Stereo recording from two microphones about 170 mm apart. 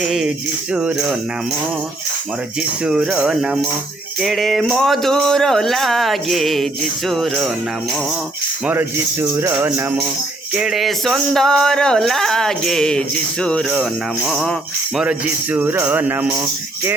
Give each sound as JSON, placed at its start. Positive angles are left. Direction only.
{"t": 0.0, "sound": "music", "side_deg": -5}
{"t": 2.8, "sound": "music", "side_deg": -5}
{"t": 8.6, "sound": "speech", "side_deg": -15}
{"t": 10.5, "sound": "music", "side_deg": -5}
{"t": 15.5, "sound": "speech", "side_deg": -10}